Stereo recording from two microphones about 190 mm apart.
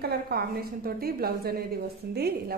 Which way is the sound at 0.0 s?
55° right (ahead or behind).